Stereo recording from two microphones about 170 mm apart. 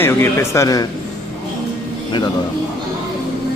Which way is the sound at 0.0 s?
15° left (ahead or behind).